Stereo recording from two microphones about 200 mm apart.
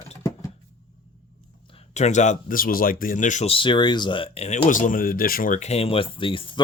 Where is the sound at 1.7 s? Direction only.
35° left (ahead or behind).